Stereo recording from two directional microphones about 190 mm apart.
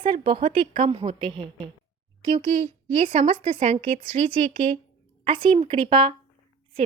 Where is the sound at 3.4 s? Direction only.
30° right (ahead or behind).